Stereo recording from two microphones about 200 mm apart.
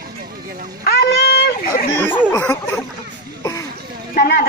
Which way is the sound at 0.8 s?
55° left (ahead or behind).